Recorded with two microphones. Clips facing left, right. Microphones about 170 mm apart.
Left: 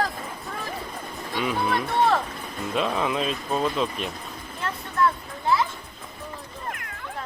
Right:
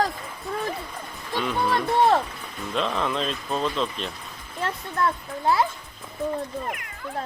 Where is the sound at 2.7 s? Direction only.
5° left (ahead or behind).